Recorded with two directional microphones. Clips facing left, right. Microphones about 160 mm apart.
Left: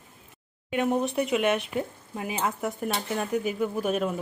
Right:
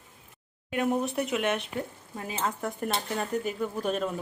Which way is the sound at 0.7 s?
Centre (ahead or behind).